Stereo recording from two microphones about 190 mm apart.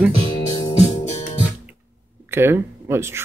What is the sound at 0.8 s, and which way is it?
Music, 35° left (ahead or behind).